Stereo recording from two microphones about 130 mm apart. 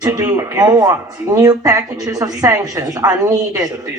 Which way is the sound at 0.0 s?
30° right (ahead or behind).